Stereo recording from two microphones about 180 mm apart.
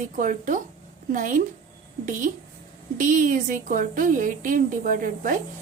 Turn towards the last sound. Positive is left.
turn(degrees=-50)  # may be behind; listen again after turning